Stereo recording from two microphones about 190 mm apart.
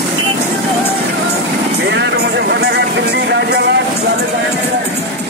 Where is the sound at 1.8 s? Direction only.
65° right (ahead or behind).